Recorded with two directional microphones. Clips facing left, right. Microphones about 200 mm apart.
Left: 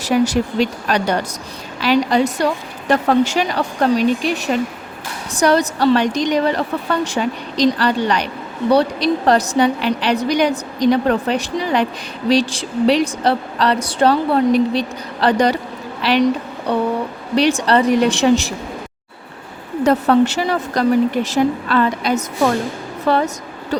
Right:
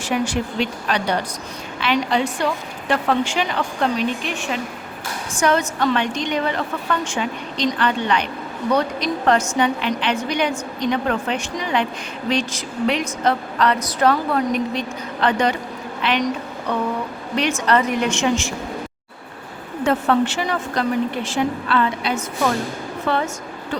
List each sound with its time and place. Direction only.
0.0 s a woman's voice: 40° left (ahead or behind)
19.8 s a woman's voice: 40° left (ahead or behind)